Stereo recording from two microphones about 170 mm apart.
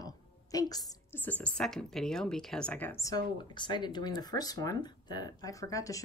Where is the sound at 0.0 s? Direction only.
20° left (ahead or behind).